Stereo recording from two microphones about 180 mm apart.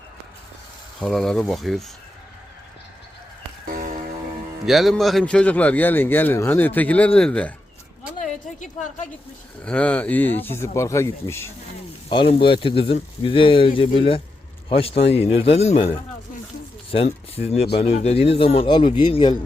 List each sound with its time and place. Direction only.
1.0 s speech: centre (ahead or behind)
4.6 s a man's voice: centre (ahead or behind)
8.2 s a sound: 45° left (ahead or behind)
9.6 s a man's voice: 5° left (ahead or behind)
12.0 s speech: 30° left (ahead or behind)
16.9 s speech: 35° left (ahead or behind)